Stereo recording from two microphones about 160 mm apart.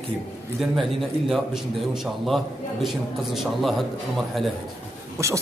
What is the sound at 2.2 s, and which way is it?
Speech, centre (ahead or behind).